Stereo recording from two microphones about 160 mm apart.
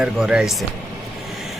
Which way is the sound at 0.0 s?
5° right (ahead or behind).